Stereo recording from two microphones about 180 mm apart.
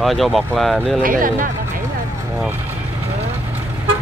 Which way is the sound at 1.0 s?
50° right (ahead or behind).